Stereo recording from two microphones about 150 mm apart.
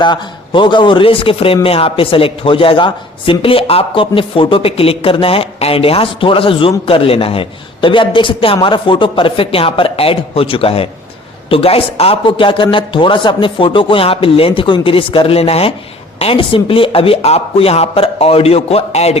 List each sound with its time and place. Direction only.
0.0 s a man's voice: 30° left (ahead or behind)